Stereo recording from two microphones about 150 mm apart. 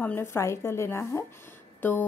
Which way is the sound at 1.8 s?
15° left (ahead or behind).